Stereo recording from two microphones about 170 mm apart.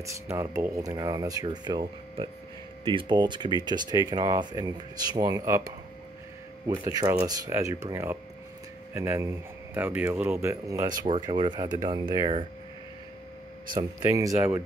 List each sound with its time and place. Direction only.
0.0 s speech: 20° right (ahead or behind)
6.8 s speech: 20° right (ahead or behind)
11.1 s speech: 25° right (ahead or behind)
14.1 s speech: 15° right (ahead or behind)